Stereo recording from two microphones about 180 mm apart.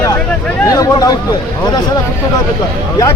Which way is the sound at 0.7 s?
20° left (ahead or behind).